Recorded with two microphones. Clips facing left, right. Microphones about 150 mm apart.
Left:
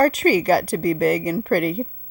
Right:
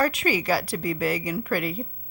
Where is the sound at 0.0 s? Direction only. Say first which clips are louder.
Left 7 dB; 40° left (ahead or behind).